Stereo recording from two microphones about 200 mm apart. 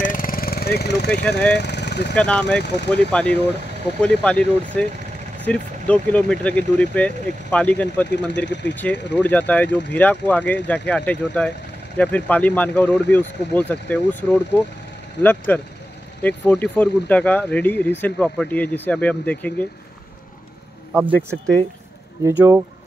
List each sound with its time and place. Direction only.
0.0 s jackhammer: 45° left (ahead or behind)
1.5 s speech: 55° left (ahead or behind)
2.1 s speech: 5° left (ahead or behind)
2.6 s speech: 55° left (ahead or behind)
3.1 s speech: 5° left (ahead or behind)
8.1 s speech: 60° left (ahead or behind)
8.8 s speech: 5° left (ahead or behind)
20.9 s speech: 10° right (ahead or behind)
22.2 s speech: 10° right (ahead or behind)